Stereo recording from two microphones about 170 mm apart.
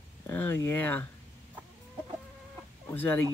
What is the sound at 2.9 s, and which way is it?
Speech, 10° left (ahead or behind).